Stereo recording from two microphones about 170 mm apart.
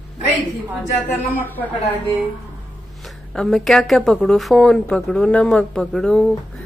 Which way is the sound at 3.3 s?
Centre (ahead or behind).